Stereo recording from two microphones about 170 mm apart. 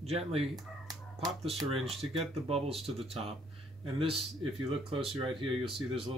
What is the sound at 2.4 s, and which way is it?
Speech, 35° right (ahead or behind).